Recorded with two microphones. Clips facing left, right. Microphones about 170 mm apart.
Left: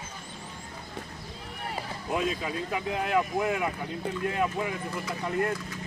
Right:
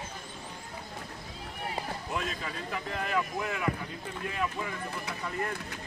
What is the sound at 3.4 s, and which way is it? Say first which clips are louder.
Speech: left 6 dB; 50° left (ahead or behind).